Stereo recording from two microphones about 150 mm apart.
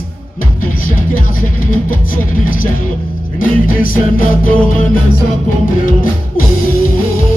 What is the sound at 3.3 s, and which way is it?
Music, 70° left (ahead or behind).